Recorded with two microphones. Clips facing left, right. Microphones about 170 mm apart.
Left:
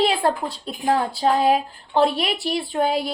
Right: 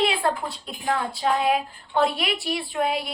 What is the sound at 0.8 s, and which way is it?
A woman's voice, 25° left (ahead or behind).